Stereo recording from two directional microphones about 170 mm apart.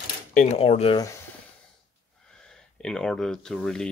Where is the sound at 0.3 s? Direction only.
45° left (ahead or behind).